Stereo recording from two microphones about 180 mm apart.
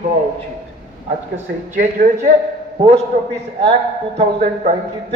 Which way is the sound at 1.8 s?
45° right (ahead or behind).